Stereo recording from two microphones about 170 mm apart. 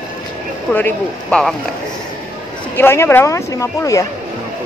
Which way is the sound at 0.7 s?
10° left (ahead or behind).